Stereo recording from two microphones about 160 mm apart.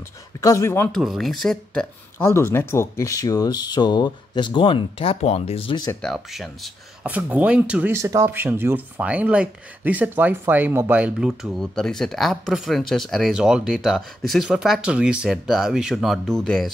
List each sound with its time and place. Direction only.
0.4 s speech: 20° left (ahead or behind)
0.9 s speech: centre (ahead or behind)
2.1 s speech: 15° left (ahead or behind); by 5.8 s 35° left (ahead or behind)
6.0 s speech: centre (ahead or behind)